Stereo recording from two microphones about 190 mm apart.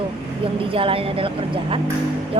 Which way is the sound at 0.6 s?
30° right (ahead or behind).